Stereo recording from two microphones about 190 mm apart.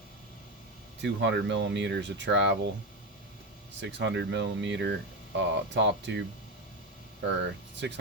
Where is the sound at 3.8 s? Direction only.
70° right (ahead or behind).